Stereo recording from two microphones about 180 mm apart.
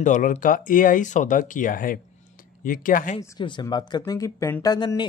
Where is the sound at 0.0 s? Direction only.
45° left (ahead or behind).